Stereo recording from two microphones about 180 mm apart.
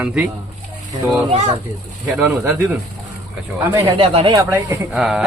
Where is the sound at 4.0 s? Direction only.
30° right (ahead or behind).